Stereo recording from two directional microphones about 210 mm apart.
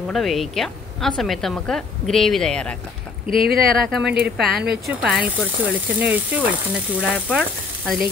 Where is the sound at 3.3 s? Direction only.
45° right (ahead or behind).